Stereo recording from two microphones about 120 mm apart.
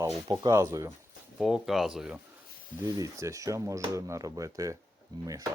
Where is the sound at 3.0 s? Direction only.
25° right (ahead or behind).